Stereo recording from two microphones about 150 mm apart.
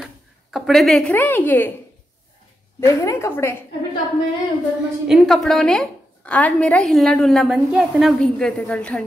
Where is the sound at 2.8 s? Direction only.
20° left (ahead or behind).